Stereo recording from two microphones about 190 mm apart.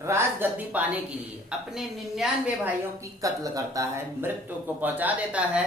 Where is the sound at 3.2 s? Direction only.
20° right (ahead or behind).